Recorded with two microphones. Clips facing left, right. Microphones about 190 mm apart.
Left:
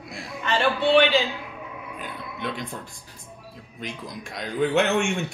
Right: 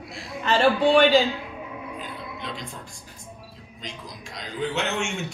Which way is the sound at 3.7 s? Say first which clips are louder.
Left 5 dB; 55° left (ahead or behind).